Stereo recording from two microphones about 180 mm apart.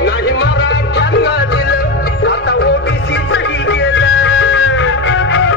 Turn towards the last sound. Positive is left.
turn(degrees=90)